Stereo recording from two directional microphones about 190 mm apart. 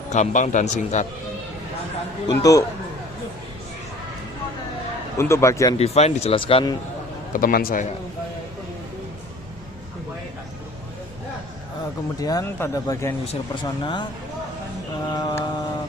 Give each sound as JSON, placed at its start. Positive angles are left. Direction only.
{"t": 0.1, "sound": "speech", "side_deg": 40}
{"t": 2.2, "sound": "speech", "side_deg": 20}
{"t": 5.1, "sound": "speech", "side_deg": 15}
{"t": 5.8, "sound": "speech", "side_deg": 35}
{"t": 7.3, "sound": "a man's voice", "side_deg": 50}
{"t": 12.2, "sound": "speech", "side_deg": 20}
{"t": 15.1, "sound": "speech", "side_deg": 20}